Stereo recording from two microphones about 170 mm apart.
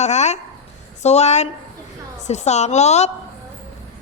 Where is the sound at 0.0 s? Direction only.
40° left (ahead or behind).